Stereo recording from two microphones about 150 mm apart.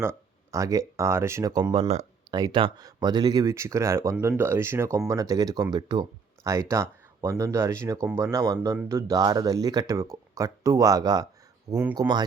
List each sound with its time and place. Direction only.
0.0 s speech: 20° right (ahead or behind)
1.8 s speech: 45° right (ahead or behind)
2.3 s speech: 30° right (ahead or behind)